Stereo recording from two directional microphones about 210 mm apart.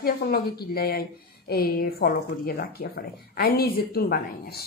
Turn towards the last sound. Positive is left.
turn(degrees=45)  # may be behind; listen again after turning